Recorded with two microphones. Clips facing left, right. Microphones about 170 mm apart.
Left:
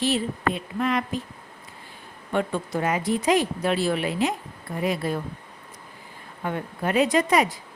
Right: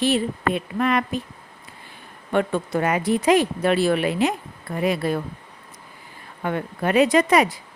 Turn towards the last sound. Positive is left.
turn(degrees=-70)  # may be behind; listen again after turning